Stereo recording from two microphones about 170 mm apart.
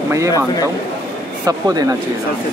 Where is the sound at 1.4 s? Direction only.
20° right (ahead or behind).